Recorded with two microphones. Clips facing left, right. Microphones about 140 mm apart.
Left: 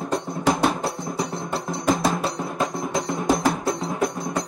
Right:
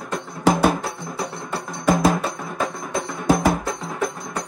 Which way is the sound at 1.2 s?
55° right (ahead or behind).